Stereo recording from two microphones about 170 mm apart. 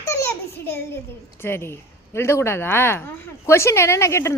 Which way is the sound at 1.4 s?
15° left (ahead or behind).